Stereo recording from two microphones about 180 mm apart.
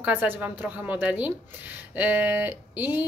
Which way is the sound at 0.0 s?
10° right (ahead or behind).